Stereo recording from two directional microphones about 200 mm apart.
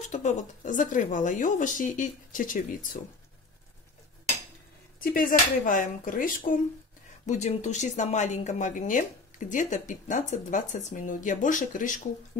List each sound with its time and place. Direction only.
0.1 s speech: 35° left (ahead or behind)
5.0 s speech: 45° left (ahead or behind)